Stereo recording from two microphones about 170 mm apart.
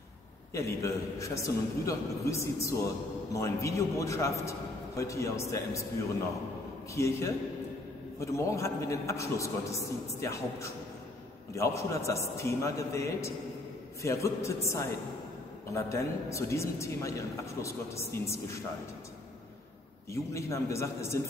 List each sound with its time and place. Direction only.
0.5 s a man's voice: 15° left (ahead or behind)
6.9 s a man's voice: 15° left (ahead or behind)
15.7 s a man's voice: 15° left (ahead or behind)
20.1 s a man's voice: 15° left (ahead or behind)